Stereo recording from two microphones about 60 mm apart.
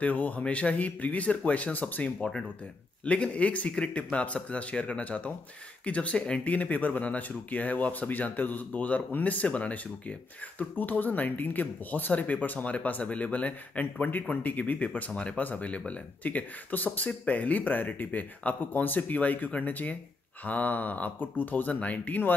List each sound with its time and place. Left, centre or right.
0.0 s speech: left
3.1 s speech: left
10.6 s speech: left